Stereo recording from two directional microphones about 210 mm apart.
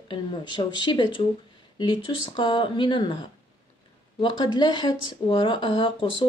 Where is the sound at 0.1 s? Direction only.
20° left (ahead or behind).